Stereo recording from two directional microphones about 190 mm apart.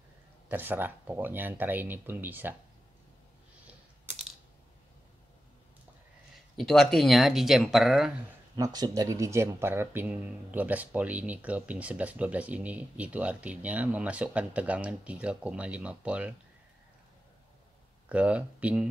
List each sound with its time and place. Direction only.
0.5 s speech: 10° right (ahead or behind)
6.5 s speech: centre (ahead or behind)
8.5 s speech: 20° right (ahead or behind)
18.0 s speech: 5° right (ahead or behind)